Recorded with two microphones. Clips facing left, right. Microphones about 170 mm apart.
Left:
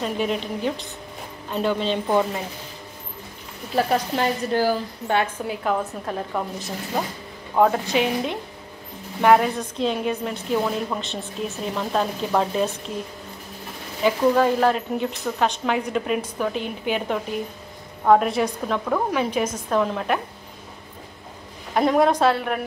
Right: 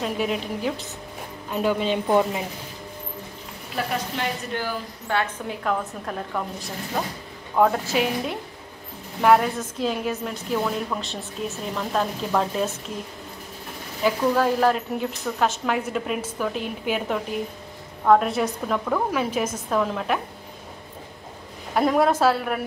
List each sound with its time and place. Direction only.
0.0 s speech: 5° right (ahead or behind)
3.7 s a woman's voice: 35° left (ahead or behind)
5.5 s speech: 5° left (ahead or behind)
14.0 s speech: 5° right (ahead or behind)
21.7 s speech: centre (ahead or behind)